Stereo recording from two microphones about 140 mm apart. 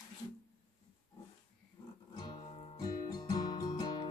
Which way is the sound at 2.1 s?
30° left (ahead or behind).